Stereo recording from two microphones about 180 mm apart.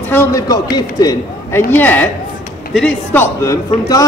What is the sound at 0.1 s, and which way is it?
A man's voice, 15° left (ahead or behind).